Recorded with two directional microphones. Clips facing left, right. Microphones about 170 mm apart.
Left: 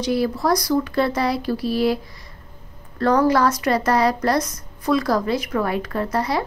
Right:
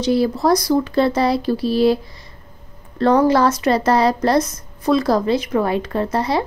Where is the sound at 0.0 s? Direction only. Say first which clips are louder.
Right 4 dB; 25° right (ahead or behind).